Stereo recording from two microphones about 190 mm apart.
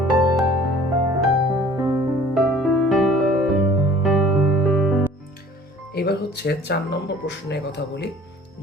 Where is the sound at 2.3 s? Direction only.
Centre (ahead or behind).